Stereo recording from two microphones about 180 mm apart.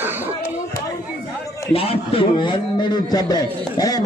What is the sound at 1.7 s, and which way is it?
A man's voice, 35° left (ahead or behind).